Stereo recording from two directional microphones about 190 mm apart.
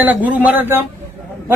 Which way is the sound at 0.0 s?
10° right (ahead or behind).